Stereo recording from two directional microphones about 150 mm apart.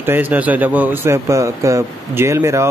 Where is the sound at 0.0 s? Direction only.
15° right (ahead or behind).